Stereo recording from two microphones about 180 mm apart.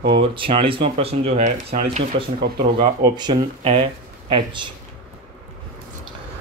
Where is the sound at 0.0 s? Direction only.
30° right (ahead or behind).